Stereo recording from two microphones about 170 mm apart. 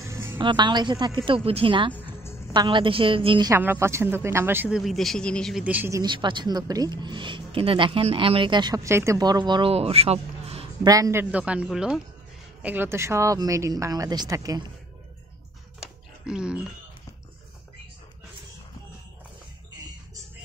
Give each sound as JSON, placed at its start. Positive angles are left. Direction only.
{"t": 0.0, "sound": "music", "side_deg": -15}
{"t": 0.4, "sound": "speech", "side_deg": -25}
{"t": 2.0, "sound": "music", "side_deg": 10}
{"t": 2.5, "sound": "speech", "side_deg": -25}
{"t": 3.5, "sound": "speech", "side_deg": -15}
{"t": 5.6, "sound": "speech", "side_deg": -10}
{"t": 10.9, "sound": "speech", "side_deg": -20}
{"t": 15.8, "sound": "music", "side_deg": -5}